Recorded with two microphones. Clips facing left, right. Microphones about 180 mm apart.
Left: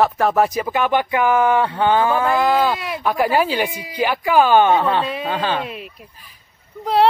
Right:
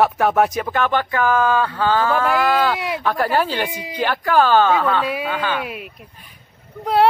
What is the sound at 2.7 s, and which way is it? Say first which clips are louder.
Speech: right 2 dB; 15° right (ahead or behind).